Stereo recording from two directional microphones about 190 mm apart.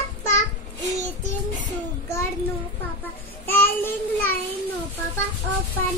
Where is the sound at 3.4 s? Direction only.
10° left (ahead or behind).